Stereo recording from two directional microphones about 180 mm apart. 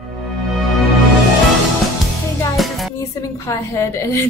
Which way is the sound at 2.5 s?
Centre (ahead or behind).